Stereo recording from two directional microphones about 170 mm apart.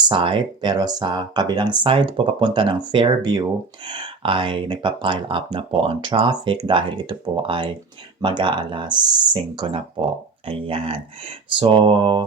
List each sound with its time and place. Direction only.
0.1 s speech: 30° right (ahead or behind)